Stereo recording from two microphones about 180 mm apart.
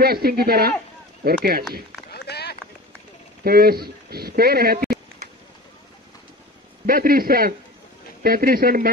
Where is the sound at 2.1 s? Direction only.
65° left (ahead or behind).